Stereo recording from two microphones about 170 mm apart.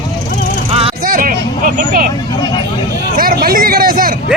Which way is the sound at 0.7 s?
35° right (ahead or behind).